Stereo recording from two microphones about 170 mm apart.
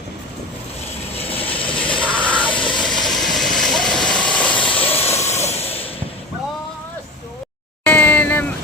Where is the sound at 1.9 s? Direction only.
5° left (ahead or behind).